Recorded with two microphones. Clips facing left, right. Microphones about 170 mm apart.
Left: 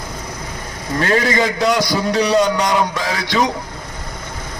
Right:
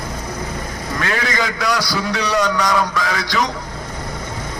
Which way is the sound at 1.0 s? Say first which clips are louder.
Left 6 dB; 35° left (ahead or behind).